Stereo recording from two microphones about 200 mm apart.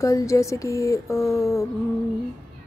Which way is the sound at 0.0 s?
15° left (ahead or behind).